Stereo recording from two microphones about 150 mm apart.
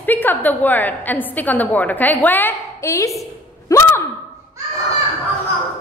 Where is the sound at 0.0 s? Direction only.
10° left (ahead or behind).